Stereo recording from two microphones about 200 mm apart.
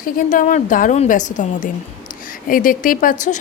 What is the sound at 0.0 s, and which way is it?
A woman's voice, 40° left (ahead or behind).